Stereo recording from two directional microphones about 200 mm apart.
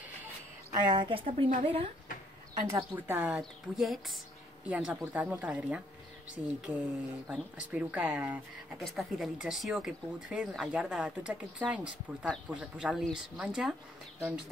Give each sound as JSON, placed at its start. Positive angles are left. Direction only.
{"t": 0.7, "sound": "a woman's voice", "side_deg": -25}
{"t": 2.7, "sound": "a woman's voice", "side_deg": -10}